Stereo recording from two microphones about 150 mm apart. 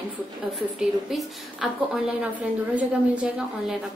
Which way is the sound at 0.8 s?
Centre (ahead or behind).